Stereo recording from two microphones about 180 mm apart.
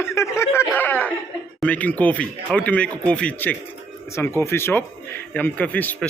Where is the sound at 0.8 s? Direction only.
10° left (ahead or behind).